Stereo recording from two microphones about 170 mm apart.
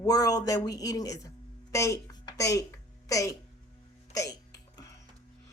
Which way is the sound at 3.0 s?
20° left (ahead or behind).